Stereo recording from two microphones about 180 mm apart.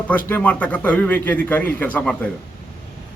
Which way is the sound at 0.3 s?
10° left (ahead or behind).